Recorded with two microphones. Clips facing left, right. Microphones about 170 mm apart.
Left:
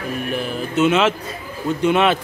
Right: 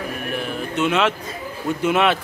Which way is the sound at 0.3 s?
Centre (ahead or behind).